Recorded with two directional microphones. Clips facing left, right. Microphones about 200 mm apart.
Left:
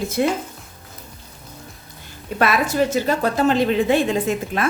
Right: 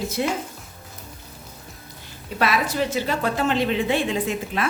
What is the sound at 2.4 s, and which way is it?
A woman's voice, 50° left (ahead or behind).